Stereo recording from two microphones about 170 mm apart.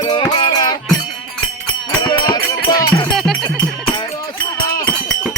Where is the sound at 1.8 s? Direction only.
25° left (ahead or behind).